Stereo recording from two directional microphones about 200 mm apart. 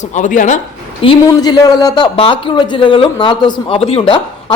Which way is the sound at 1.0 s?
20° left (ahead or behind).